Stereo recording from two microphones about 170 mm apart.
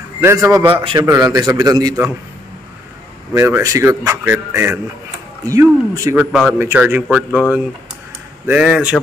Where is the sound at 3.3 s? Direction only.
20° right (ahead or behind).